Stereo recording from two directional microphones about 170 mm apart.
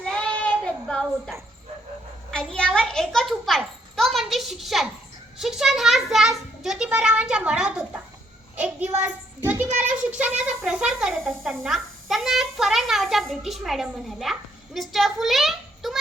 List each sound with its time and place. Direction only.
0.0 s child singing: 5° left (ahead or behind)
2.3 s a child's voice: 5° left (ahead or behind)